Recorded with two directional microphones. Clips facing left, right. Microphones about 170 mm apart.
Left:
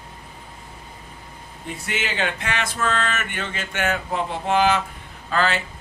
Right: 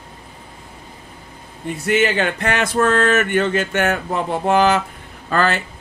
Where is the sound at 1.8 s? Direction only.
50° right (ahead or behind).